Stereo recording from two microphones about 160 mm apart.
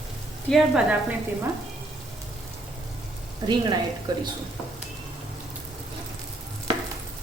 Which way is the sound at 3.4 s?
25° right (ahead or behind).